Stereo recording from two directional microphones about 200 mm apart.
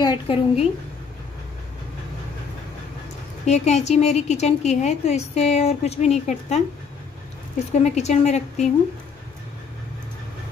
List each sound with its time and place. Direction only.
0.0 s a woman's voice: 25° left (ahead or behind)
3.4 s a woman's voice: 35° left (ahead or behind)
7.7 s a woman's voice: 35° left (ahead or behind)